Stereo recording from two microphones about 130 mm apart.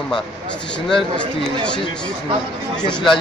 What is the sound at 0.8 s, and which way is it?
Speech, 5° left (ahead or behind).